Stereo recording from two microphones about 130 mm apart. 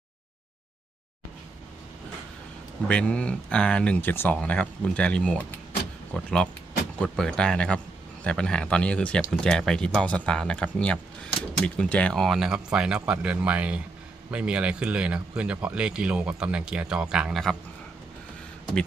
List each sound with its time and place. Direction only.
2.8 s speech: 10° left (ahead or behind)